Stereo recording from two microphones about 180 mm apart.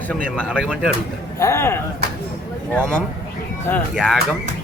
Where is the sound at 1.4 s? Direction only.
15° left (ahead or behind).